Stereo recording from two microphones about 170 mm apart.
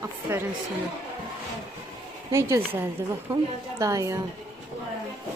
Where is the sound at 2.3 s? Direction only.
15° right (ahead or behind).